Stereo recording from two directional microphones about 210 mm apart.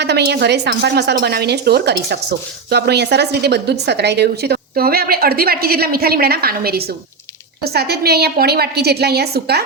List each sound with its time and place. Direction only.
0.0 s a woman's voice: 50° right (ahead or behind)